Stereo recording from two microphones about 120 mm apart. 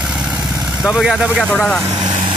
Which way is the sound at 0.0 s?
5° right (ahead or behind).